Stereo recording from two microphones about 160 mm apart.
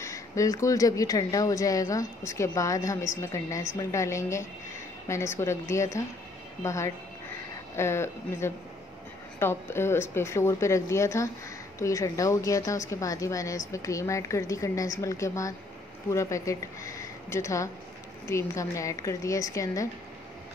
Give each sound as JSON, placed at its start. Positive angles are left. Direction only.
{"t": 0.0, "sound": "a woman's voice", "side_deg": 20}